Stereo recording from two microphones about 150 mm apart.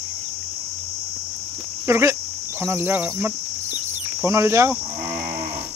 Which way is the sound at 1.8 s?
20° right (ahead or behind).